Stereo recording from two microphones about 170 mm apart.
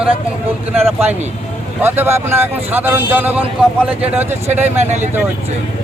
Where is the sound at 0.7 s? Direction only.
10° right (ahead or behind).